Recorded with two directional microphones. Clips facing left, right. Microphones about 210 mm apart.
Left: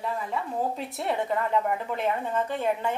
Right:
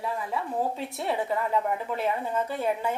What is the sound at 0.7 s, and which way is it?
A woman's voice, centre (ahead or behind).